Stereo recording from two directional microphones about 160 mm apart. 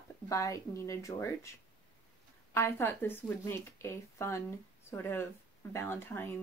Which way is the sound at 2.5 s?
15° left (ahead or behind).